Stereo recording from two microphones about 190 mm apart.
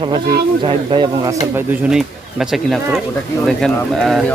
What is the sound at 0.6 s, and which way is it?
Speech, 25° right (ahead or behind).